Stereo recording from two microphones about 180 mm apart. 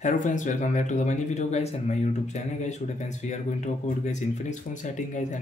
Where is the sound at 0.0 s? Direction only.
45° left (ahead or behind).